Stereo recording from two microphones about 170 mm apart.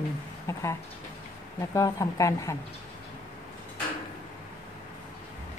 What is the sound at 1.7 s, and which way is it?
Speech, 20° left (ahead or behind).